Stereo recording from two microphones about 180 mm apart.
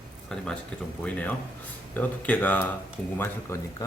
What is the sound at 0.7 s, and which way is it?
Speech, 5° left (ahead or behind).